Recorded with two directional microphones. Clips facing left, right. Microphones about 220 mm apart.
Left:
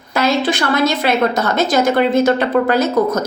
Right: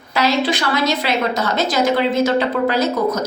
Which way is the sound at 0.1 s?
50° left (ahead or behind).